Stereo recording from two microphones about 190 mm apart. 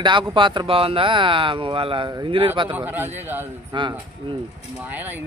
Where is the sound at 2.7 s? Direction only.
10° right (ahead or behind).